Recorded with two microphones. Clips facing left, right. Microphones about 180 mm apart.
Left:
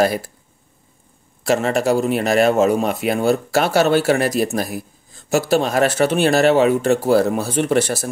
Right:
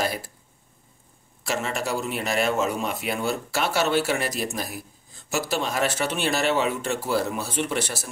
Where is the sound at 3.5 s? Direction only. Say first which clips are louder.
Left 9 dB; 40° left (ahead or behind).